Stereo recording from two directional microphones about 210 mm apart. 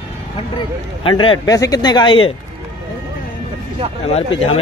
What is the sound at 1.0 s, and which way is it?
Speech, 25° left (ahead or behind).